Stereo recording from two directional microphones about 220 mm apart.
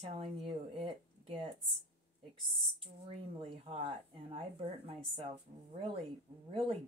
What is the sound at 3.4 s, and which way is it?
Speech, 25° right (ahead or behind).